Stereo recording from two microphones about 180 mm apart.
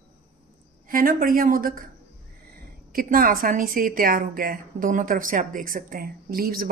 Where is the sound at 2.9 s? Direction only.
50° right (ahead or behind).